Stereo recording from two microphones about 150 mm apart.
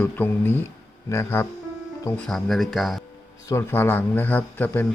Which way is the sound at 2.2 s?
Centre (ahead or behind).